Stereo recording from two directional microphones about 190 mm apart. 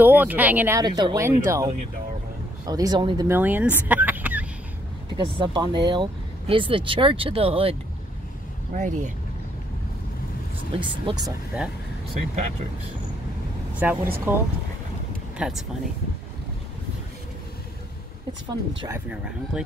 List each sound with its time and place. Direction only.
0.0 s speech: 10° right (ahead or behind)
3.3 s fowl: 10° right (ahead or behind)
5.1 s speech: 25° right (ahead or behind)
8.7 s speech: 40° right (ahead or behind)
10.7 s speech: 25° right (ahead or behind)
11.2 s speech: 5° right (ahead or behind)
13.8 s speech: 10° right (ahead or behind)
18.9 s speech: 10° right (ahead or behind)